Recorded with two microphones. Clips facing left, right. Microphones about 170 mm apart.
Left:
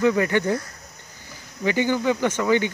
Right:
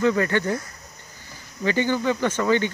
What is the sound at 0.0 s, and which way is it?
Speech, 15° left (ahead or behind).